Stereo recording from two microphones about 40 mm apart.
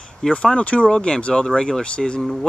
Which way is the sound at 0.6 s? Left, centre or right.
Left.